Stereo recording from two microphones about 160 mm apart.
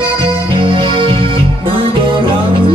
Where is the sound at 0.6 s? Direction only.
35° right (ahead or behind).